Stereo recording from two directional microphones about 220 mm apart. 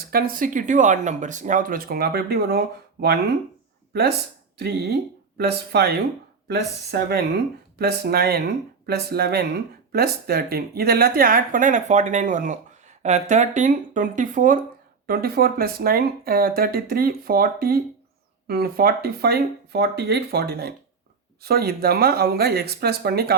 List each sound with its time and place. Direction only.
0.0 s speech: 45° right (ahead or behind)
4.5 s speech: 45° right (ahead or behind)